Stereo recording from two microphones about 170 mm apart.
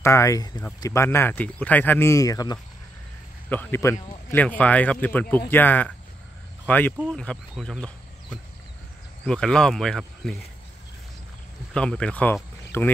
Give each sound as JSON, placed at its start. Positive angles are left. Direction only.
{"t": 0.0, "sound": "speech", "side_deg": 15}
{"t": 3.4, "sound": "speech", "side_deg": 10}
{"t": 11.7, "sound": "speech", "side_deg": 5}